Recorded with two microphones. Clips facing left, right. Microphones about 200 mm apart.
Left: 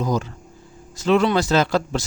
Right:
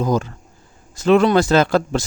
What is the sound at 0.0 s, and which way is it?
Speech, 50° right (ahead or behind).